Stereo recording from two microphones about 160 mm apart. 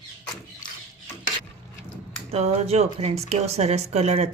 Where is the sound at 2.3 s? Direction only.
40° right (ahead or behind).